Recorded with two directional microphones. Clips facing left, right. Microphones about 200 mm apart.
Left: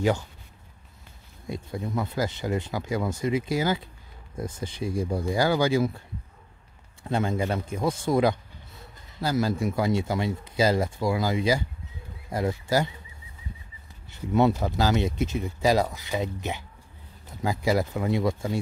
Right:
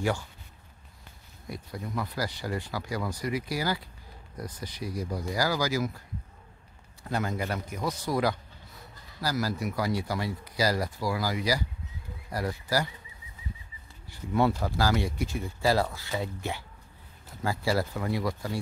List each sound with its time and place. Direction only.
1.5 s speech: 25° left (ahead or behind)
14.1 s speech: 20° left (ahead or behind)